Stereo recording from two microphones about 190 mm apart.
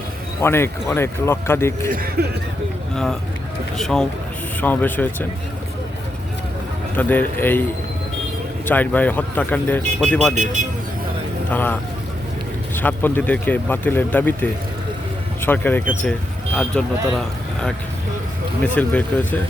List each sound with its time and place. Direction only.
0.4 s speech: 10° left (ahead or behind)
1.9 s speech: 50° right (ahead or behind)
2.9 s speech: 5° left (ahead or behind)
6.9 s speech: 10° left (ahead or behind)
8.6 s speech: 10° left (ahead or behind)
11.5 s speech: 10° left (ahead or behind)
18.6 s speech: 10° left (ahead or behind)